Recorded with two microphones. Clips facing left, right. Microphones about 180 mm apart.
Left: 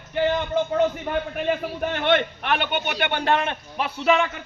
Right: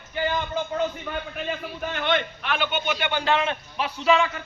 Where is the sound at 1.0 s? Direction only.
55° left (ahead or behind).